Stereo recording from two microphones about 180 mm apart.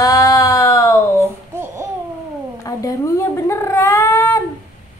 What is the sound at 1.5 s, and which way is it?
Babbling, 15° right (ahead or behind).